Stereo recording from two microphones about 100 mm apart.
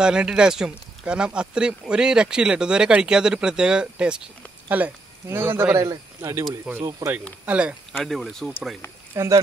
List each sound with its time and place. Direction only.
0.0 s speech: 10° right (ahead or behind); by 6.4 s 25° right (ahead or behind)
6.7 s speech: 5° right (ahead or behind)
8.0 s speech: 5° left (ahead or behind)
9.1 s speech: 30° right (ahead or behind)